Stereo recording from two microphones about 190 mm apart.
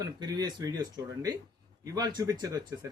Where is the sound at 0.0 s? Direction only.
20° right (ahead or behind).